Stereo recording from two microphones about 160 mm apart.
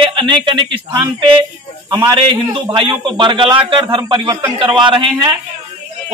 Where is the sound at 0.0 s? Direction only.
30° right (ahead or behind).